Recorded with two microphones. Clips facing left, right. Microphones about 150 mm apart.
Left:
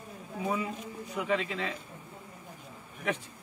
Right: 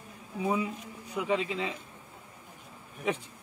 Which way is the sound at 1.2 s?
15° right (ahead or behind).